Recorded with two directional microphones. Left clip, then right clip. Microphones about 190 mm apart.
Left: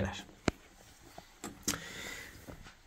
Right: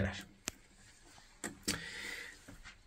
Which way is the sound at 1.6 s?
10° left (ahead or behind).